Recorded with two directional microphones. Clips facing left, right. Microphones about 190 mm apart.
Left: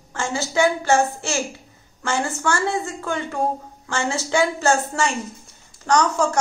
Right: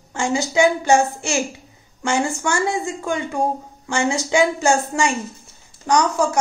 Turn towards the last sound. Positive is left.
turn(degrees=-10)  # may be behind; listen again after turning